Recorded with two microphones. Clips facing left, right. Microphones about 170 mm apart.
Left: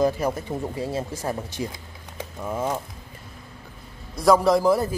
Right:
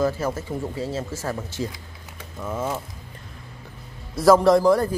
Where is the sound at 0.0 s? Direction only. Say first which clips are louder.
Left 1 dB; 15° left (ahead or behind).